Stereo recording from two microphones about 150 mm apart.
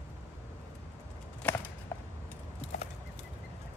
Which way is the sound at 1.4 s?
10° left (ahead or behind).